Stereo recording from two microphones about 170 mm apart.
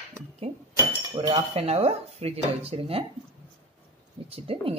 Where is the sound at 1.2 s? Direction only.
35° right (ahead or behind).